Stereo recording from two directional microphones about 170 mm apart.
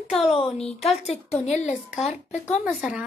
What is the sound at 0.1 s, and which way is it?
Speech, 35° left (ahead or behind).